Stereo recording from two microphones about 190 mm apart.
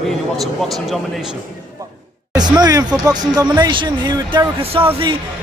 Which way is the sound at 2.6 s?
20° right (ahead or behind).